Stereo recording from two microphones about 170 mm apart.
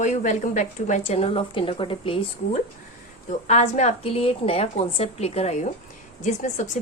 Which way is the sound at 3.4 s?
40° left (ahead or behind).